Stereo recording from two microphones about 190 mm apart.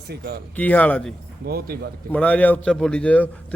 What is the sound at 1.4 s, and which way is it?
Speech, 55° right (ahead or behind).